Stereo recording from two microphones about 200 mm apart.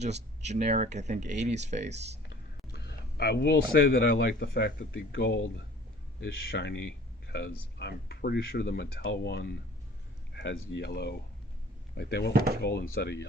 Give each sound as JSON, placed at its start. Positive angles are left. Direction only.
{"t": 0.4, "sound": "speech", "side_deg": -35}
{"t": 2.7, "sound": "speech", "side_deg": 55}